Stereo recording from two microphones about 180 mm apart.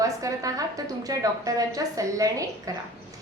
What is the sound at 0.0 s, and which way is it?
A woman's voice, 20° right (ahead or behind).